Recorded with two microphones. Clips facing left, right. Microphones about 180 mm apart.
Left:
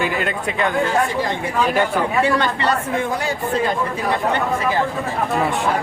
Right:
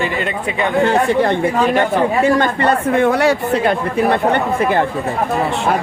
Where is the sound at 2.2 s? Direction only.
50° right (ahead or behind).